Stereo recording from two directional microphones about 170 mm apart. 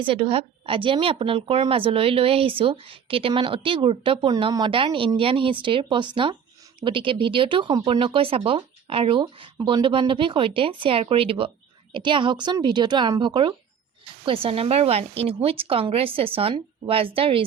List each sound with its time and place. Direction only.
0.0 s a woman's voice: 30° right (ahead or behind)